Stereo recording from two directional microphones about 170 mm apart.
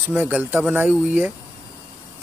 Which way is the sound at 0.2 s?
10° right (ahead or behind).